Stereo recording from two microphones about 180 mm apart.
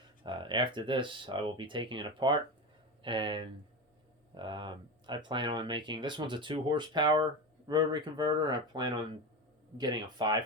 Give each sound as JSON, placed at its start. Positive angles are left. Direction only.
{"t": 0.2, "sound": "speech", "side_deg": -25}